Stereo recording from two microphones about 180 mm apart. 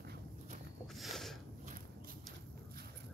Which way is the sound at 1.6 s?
50° right (ahead or behind).